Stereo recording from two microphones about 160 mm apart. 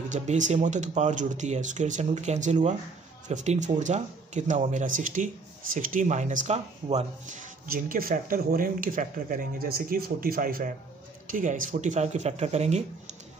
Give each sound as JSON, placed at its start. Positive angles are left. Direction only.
{"t": 0.1, "sound": "speech", "side_deg": -45}